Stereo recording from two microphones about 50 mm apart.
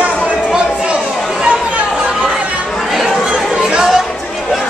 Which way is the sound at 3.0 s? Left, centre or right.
Centre.